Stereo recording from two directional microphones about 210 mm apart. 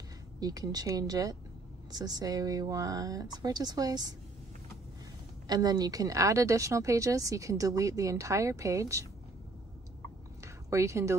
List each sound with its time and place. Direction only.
0.4 s speech: 15° right (ahead or behind)
5.5 s speech: 20° right (ahead or behind)
10.4 s a sound: 15° right (ahead or behind)